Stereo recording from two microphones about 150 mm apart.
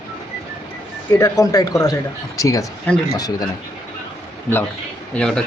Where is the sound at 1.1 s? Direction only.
20° left (ahead or behind).